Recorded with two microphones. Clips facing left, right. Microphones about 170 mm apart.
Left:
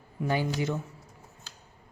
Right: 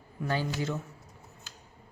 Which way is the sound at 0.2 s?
15° left (ahead or behind).